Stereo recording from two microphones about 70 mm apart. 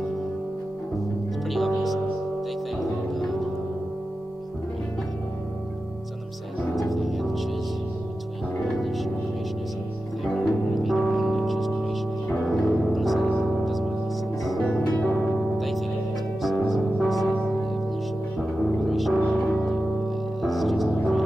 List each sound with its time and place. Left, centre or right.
1.5 s music: centre
6.7 s music: centre
10.2 s music: centre
14.6 s music: centre
15.5 s music: centre
18.9 s music: centre